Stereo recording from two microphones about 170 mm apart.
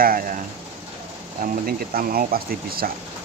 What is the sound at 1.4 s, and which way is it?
Speech, 60° right (ahead or behind).